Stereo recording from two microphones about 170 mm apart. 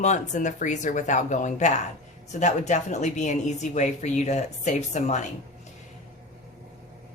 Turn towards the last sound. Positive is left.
turn(degrees=45)  # may be behind; listen again after turning